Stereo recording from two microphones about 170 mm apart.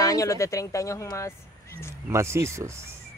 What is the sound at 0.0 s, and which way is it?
Speech, 20° left (ahead or behind).